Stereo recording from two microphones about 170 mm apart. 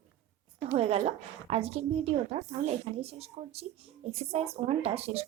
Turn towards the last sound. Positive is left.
turn(degrees=-35)  # may be behind; listen again after turning